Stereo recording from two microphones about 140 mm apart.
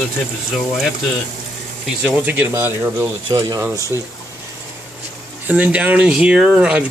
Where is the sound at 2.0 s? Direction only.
10° right (ahead or behind).